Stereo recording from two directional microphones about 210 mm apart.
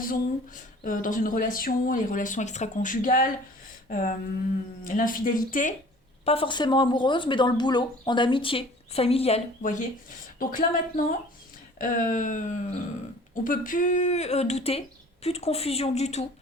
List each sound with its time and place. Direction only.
0.0 s speech: 40° left (ahead or behind)
3.8 s a sound: 40° left (ahead or behind)
4.8 s speech: 40° left (ahead or behind)
6.2 s speech: 25° left (ahead or behind)